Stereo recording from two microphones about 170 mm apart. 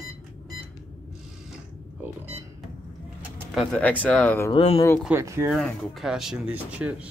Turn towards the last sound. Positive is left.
turn(degrees=-5)  # may be behind; listen again after turning